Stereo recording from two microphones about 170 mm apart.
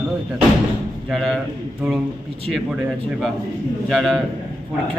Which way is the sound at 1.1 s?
Centre (ahead or behind).